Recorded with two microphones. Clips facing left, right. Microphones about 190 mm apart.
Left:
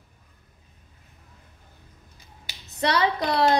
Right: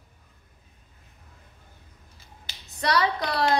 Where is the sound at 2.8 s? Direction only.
25° left (ahead or behind).